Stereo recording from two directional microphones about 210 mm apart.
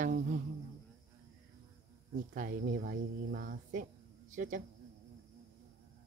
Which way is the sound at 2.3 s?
40° right (ahead or behind).